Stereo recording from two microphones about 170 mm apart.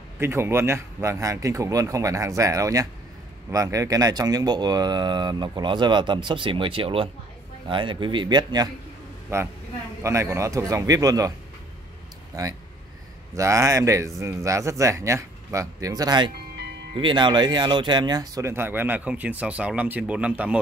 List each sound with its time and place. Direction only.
0.2 s speech: 15° right (ahead or behind)
12.3 s speech: 20° right (ahead or behind)